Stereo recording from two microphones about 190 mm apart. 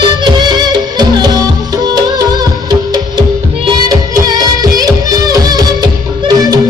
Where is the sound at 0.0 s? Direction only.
25° right (ahead or behind).